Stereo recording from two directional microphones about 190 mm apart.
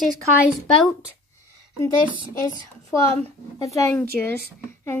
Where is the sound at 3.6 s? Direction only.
15° left (ahead or behind).